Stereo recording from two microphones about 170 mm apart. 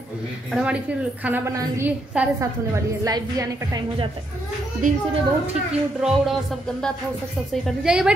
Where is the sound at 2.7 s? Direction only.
20° right (ahead or behind).